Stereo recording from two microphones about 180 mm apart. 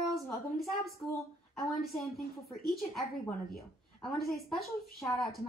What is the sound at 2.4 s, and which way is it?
Speech, centre (ahead or behind).